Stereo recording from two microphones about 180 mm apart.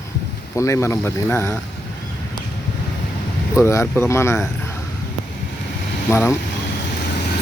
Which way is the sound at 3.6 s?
15° left (ahead or behind).